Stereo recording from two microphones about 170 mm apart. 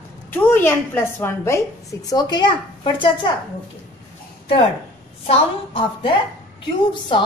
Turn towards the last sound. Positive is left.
turn(degrees=30)  # may be behind; listen again after turning